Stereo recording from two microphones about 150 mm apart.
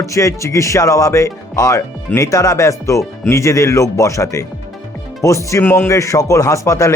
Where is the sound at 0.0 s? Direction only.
20° left (ahead or behind).